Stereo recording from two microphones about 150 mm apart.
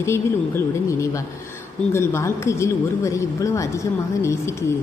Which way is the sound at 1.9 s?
15° left (ahead or behind).